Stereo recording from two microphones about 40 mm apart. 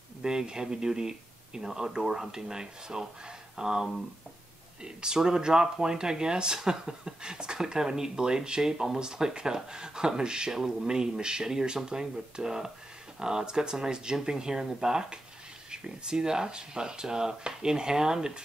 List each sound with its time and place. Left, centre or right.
0.2 s speech: centre